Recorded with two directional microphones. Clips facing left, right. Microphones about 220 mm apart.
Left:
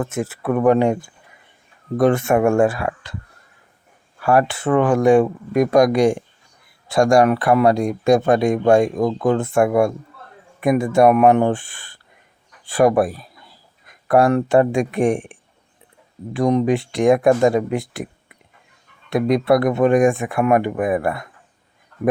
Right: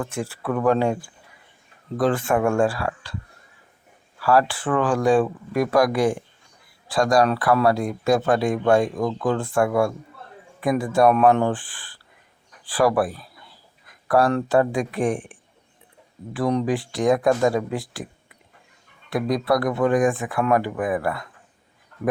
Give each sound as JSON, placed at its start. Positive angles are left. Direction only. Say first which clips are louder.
{"t": 0.0, "sound": "speech", "louder": "left 5 dB", "side_deg": 20}
{"t": 4.2, "sound": "a man's voice", "louder": "left 2 dB", "side_deg": 20}
{"t": 16.3, "sound": "speech", "louder": "left 5 dB", "side_deg": 20}
{"t": 19.1, "sound": "speech", "louder": "left 5 dB", "side_deg": 25}